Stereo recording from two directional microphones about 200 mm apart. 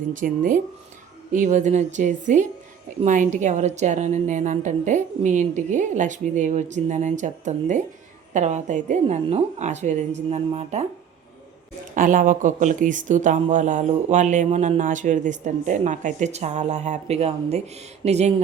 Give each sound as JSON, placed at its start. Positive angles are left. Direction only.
{"t": 0.2, "sound": "speech", "side_deg": -40}
{"t": 11.9, "sound": "speech", "side_deg": -40}